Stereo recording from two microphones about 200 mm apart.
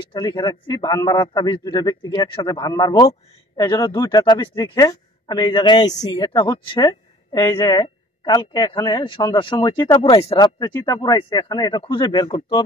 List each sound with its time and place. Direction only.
0.1 s a man's voice: 20° left (ahead or behind)